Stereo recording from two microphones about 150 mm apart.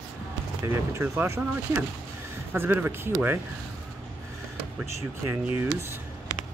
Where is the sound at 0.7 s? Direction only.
15° right (ahead or behind).